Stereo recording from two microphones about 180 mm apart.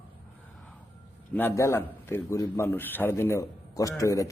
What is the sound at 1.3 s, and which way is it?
A man's voice, 10° left (ahead or behind).